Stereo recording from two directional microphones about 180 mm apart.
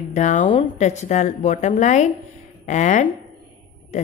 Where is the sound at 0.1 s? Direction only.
45° left (ahead or behind).